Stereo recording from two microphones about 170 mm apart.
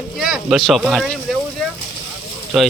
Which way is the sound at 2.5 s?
Centre (ahead or behind).